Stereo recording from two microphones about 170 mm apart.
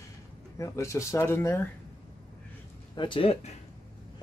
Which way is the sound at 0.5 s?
15° left (ahead or behind).